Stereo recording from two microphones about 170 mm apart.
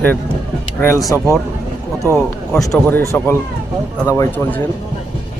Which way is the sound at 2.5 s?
5° left (ahead or behind).